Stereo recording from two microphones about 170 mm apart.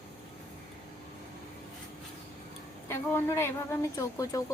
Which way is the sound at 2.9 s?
15° left (ahead or behind).